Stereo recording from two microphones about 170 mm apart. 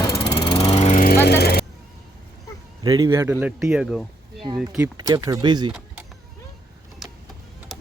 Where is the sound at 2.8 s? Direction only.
20° right (ahead or behind); by 4.4 s centre (ahead or behind).